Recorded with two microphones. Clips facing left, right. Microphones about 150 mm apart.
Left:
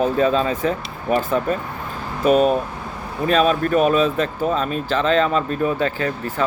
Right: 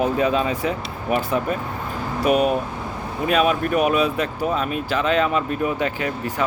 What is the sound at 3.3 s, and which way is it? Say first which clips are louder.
Speech: left 2 dB; 10° right (ahead or behind).